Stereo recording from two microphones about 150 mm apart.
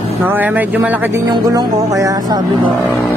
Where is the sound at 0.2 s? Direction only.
10° right (ahead or behind).